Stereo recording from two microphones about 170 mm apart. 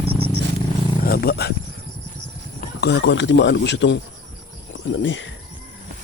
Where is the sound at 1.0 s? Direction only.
65° left (ahead or behind).